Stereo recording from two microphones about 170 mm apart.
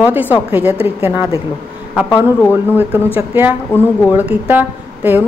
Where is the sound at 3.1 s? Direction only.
10° right (ahead or behind).